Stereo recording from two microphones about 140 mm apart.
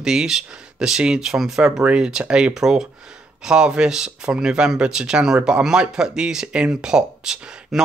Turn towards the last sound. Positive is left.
turn(degrees=-5)  # may be behind; listen again after turning